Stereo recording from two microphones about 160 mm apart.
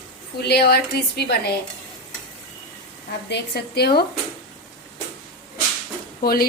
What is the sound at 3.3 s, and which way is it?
Speech, 90° left.